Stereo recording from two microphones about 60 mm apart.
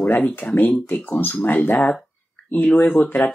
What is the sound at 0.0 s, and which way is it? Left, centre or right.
Speech, left.